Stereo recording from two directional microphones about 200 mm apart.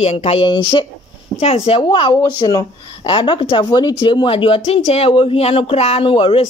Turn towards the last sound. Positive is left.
turn(degrees=25)  # may be behind; listen again after turning